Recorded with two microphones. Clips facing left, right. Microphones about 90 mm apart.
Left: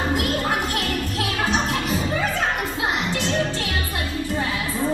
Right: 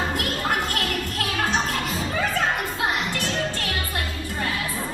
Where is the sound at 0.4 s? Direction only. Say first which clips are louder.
Left 1 dB; 15° left (ahead or behind).